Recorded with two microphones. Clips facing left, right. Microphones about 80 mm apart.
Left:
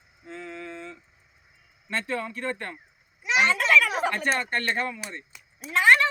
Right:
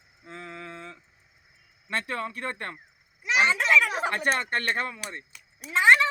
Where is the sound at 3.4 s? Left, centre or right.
Centre.